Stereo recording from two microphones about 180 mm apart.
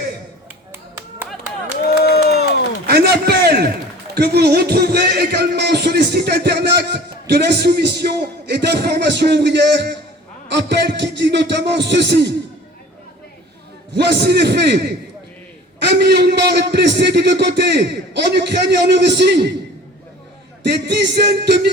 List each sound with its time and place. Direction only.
2.0 s crowd: 60° left (ahead or behind)
2.8 s a sound: 60° right (ahead or behind)
4.1 s a man's voice: 60° right (ahead or behind)
13.9 s a man's voice: 65° right (ahead or behind)
20.7 s a man's voice: 70° right (ahead or behind)